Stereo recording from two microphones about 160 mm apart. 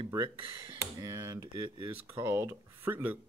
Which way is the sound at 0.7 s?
20° right (ahead or behind).